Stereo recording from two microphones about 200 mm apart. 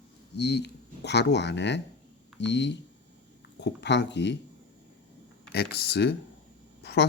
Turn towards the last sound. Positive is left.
turn(degrees=60)  # may be behind; listen again after turning